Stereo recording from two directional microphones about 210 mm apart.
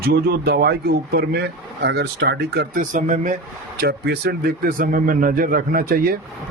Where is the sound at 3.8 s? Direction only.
50° right (ahead or behind).